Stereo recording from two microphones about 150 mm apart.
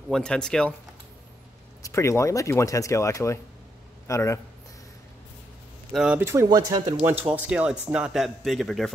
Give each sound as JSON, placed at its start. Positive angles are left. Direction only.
{"t": 0.1, "sound": "a man's voice", "side_deg": 5}
{"t": 1.8, "sound": "speech", "side_deg": 20}
{"t": 5.9, "sound": "a man's voice", "side_deg": -5}
{"t": 6.2, "sound": "speech", "side_deg": -20}
{"t": 7.1, "sound": "a man's voice", "side_deg": -10}